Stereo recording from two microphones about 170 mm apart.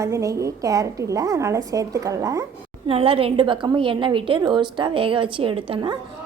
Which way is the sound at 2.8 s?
35° right (ahead or behind).